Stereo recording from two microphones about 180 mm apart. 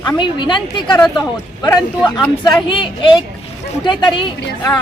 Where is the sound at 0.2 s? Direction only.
25° left (ahead or behind).